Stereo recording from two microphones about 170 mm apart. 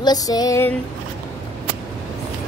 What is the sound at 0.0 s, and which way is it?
Female singing, 25° left (ahead or behind).